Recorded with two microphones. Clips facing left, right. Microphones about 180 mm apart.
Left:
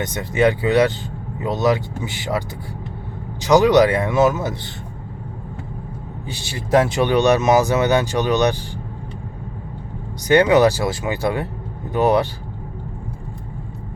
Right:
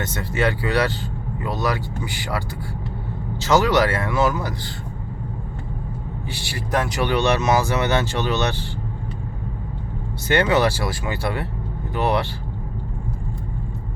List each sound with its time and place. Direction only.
0.0 s speech: 20° left (ahead or behind)
3.4 s speech: 15° left (ahead or behind)
6.3 s speech: 20° left (ahead or behind)
10.2 s speech: 15° left (ahead or behind)